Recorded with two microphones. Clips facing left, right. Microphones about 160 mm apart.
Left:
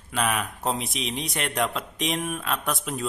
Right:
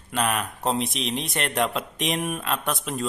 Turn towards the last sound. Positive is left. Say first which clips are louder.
# right 1 dB
turn(degrees=0)  # may be behind; listen again after turning